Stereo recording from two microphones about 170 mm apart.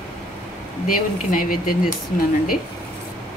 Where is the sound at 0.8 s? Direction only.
55° left (ahead or behind).